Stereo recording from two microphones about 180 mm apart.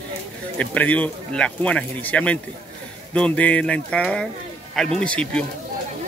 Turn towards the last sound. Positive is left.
turn(degrees=5)  # may be behind; listen again after turning